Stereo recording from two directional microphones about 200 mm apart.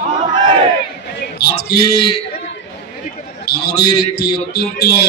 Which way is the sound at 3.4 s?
55° left (ahead or behind).